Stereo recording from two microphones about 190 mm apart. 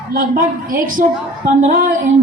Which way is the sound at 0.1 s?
50° right (ahead or behind).